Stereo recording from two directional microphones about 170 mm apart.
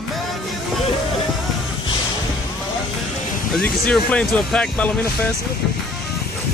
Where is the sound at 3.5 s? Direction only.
5° left (ahead or behind).